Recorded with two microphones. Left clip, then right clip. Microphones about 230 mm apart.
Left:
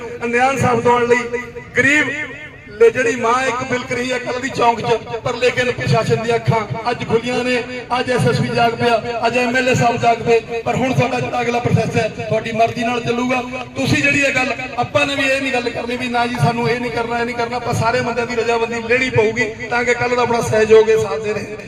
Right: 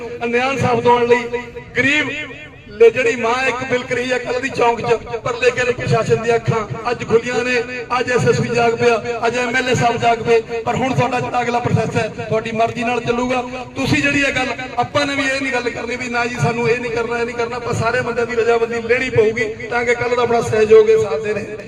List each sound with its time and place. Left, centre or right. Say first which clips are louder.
0.2 s a man's voice: left 2 dB; left
3.1 s a man's voice: left 1 dB; left